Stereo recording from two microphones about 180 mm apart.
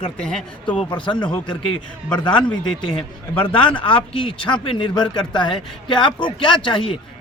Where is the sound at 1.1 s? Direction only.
25° left (ahead or behind).